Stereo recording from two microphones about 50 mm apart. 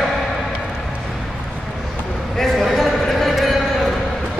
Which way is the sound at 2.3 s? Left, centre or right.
Centre.